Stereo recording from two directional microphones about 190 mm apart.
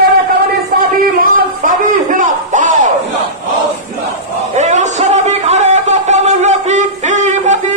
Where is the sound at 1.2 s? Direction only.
45° right (ahead or behind).